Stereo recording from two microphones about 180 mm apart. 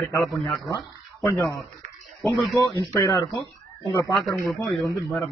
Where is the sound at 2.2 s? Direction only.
Centre (ahead or behind).